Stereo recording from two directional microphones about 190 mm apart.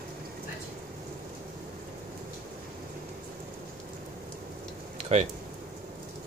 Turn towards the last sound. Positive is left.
turn(degrees=-35)  # may be behind; listen again after turning